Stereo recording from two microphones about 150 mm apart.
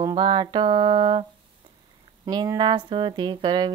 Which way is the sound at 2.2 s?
25° right (ahead or behind).